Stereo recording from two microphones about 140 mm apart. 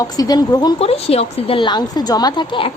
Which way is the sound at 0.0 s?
25° left (ahead or behind).